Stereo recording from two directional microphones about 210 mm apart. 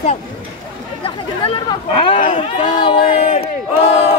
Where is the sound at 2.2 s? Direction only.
35° left (ahead or behind).